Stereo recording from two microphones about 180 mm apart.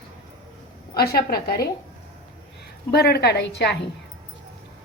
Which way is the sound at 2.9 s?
60° left (ahead or behind).